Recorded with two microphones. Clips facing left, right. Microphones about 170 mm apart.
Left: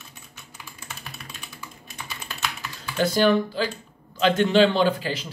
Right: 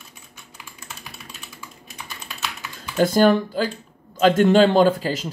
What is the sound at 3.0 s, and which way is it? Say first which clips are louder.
Speech: right 4 dB; 45° right (ahead or behind).